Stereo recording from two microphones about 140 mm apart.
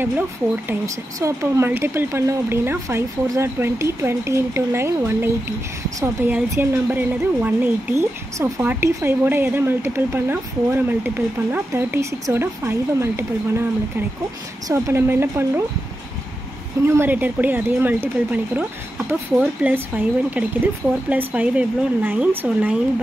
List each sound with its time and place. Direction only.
0.7 s speech: 20° right (ahead or behind)
6.5 s speech: 15° right (ahead or behind)
16.8 s speech: 15° right (ahead or behind)